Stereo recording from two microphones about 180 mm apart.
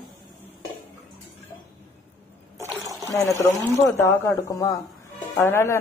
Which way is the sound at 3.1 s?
20° left (ahead or behind).